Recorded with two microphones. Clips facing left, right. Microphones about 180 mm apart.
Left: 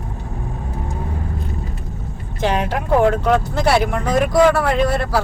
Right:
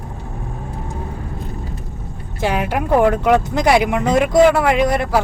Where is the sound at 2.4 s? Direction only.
10° right (ahead or behind).